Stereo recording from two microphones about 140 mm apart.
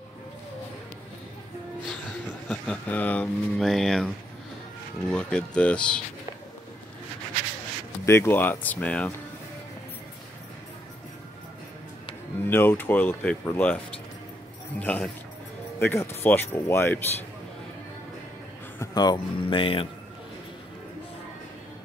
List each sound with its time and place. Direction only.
2.4 s speech: 5° left (ahead or behind)
8.0 s speech: 20° left (ahead or behind)
12.4 s speech: 15° left (ahead or behind)
14.8 s speech: 10° left (ahead or behind)
18.8 s speech: 30° left (ahead or behind)